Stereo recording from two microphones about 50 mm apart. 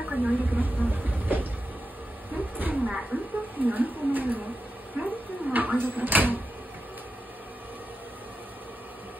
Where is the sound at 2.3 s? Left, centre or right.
Right.